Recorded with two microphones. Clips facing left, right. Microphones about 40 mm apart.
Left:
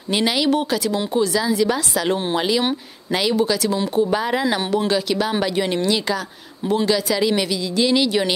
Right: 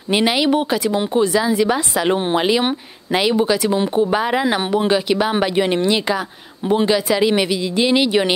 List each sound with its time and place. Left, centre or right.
0.1 s speech: right